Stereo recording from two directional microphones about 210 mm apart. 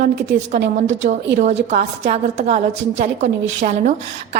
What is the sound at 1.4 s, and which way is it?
A woman's voice, 35° right (ahead or behind).